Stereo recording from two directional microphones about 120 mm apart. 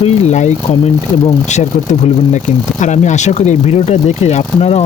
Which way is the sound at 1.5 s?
80° left.